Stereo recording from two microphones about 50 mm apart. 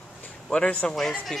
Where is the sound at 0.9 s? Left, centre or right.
Centre.